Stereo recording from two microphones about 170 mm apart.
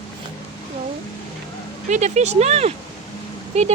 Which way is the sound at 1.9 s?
40° right (ahead or behind).